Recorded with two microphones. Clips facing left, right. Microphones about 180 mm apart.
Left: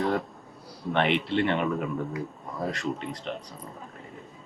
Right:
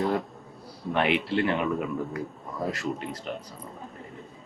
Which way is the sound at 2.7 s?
5° right (ahead or behind).